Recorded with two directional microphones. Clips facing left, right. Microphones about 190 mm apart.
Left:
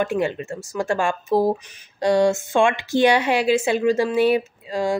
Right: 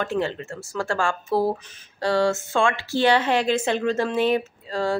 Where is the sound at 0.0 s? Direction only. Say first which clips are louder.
Left 3 dB; 15° left (ahead or behind).